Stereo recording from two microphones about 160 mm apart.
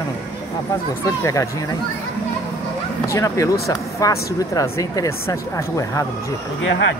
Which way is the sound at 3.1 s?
20° left (ahead or behind).